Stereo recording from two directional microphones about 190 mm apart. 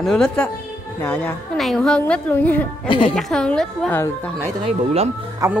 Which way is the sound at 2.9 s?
25° left (ahead or behind).